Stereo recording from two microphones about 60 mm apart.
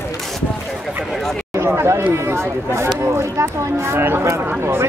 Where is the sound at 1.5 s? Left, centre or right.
Right.